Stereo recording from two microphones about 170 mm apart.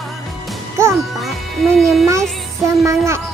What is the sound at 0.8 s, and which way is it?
Music, 15° right (ahead or behind).